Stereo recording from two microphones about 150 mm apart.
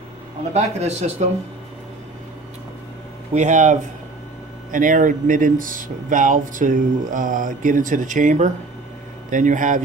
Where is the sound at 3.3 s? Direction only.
55° right (ahead or behind).